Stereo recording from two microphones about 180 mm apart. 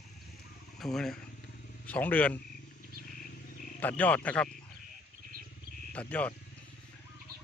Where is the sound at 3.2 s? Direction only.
50° left (ahead or behind).